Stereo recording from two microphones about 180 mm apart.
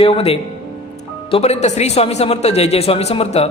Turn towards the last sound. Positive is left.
turn(degrees=35)  # may be behind; listen again after turning